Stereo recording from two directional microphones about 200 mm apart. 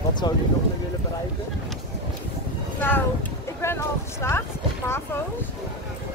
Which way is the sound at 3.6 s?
15° left (ahead or behind).